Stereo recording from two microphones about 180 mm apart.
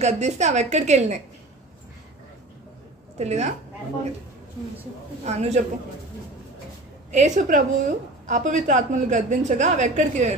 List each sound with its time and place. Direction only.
0.0 s a woman's voice: 40° right (ahead or behind)
3.2 s a woman's voice: 40° right (ahead or behind)
5.2 s a woman's voice: 40° right (ahead or behind)
7.1 s a woman's voice: 40° right (ahead or behind)